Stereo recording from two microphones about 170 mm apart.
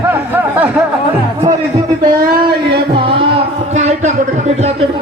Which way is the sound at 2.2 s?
60° right (ahead or behind).